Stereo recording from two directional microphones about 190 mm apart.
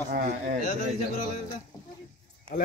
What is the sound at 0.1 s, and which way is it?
Speech, 50° right (ahead or behind).